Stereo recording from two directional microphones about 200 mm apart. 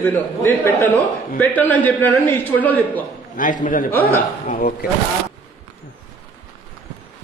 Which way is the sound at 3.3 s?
40° left (ahead or behind).